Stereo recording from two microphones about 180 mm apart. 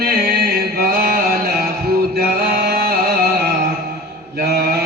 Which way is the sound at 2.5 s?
60° right (ahead or behind).